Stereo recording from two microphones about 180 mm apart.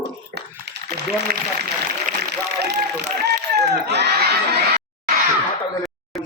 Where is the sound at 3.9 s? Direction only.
65° right (ahead or behind).